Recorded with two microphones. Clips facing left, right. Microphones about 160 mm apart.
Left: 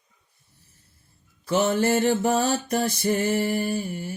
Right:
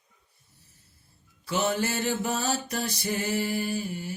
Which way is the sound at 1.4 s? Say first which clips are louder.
Left 6 dB; 50° left (ahead or behind).